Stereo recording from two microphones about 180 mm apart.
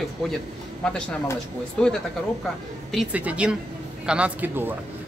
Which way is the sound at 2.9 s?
5° right (ahead or behind).